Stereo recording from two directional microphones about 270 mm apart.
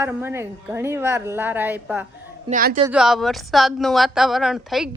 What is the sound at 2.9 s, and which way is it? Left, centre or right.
A woman's voice, centre.